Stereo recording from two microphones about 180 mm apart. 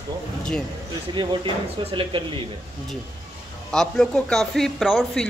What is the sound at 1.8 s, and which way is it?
Speech, 30° right (ahead or behind).